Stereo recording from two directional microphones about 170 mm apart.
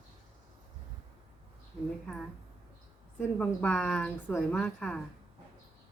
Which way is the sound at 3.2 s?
10° left (ahead or behind).